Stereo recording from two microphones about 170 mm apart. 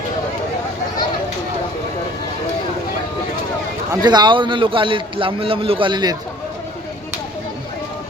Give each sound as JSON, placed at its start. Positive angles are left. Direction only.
{"t": 4.0, "sound": "a man's voice", "side_deg": -25}